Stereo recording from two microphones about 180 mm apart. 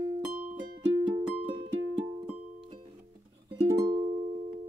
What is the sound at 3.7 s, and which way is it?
Music, 25° right (ahead or behind).